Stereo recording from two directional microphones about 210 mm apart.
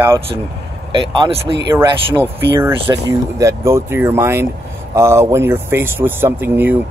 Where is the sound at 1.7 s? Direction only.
10° right (ahead or behind).